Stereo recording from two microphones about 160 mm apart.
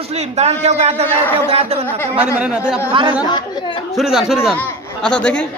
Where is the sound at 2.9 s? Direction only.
30° right (ahead or behind).